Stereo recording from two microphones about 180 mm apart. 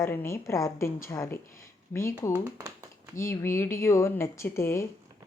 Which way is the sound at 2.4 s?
15° right (ahead or behind).